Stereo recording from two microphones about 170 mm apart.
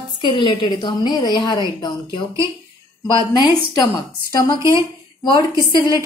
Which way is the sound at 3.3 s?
25° left (ahead or behind).